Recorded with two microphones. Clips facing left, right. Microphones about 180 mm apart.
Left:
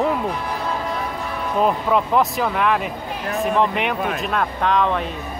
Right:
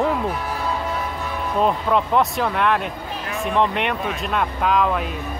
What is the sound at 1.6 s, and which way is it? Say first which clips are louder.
Speech: left 1 dB; centre (ahead or behind).